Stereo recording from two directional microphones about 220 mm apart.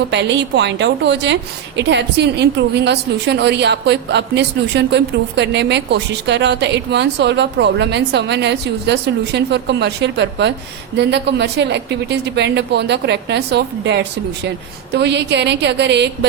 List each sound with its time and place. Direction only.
0.1 s a woman's voice: 50° right (ahead or behind)